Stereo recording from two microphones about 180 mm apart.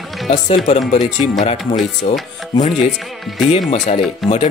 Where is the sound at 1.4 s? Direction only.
35° left (ahead or behind).